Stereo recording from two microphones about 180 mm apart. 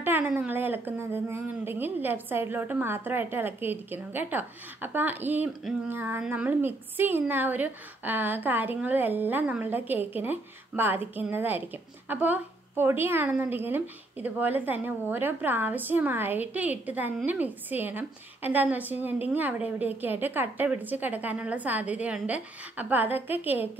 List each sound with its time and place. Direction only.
0.0 s speech: 10° right (ahead or behind)